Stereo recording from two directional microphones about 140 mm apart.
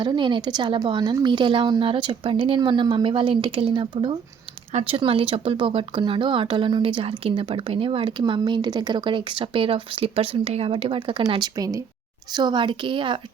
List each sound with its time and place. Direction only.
0.0 s speech: 35° right (ahead or behind)